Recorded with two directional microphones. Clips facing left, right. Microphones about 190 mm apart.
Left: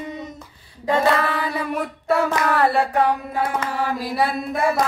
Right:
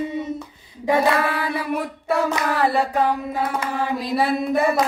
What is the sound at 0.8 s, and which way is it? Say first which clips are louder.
Child singing: even; 10° right (ahead or behind).